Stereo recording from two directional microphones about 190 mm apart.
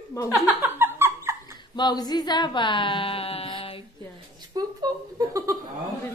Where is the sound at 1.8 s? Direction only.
20° left (ahead or behind).